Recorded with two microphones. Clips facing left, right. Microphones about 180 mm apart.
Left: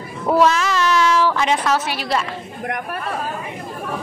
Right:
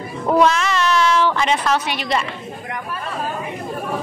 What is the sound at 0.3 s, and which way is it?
Cat, 5° left (ahead or behind).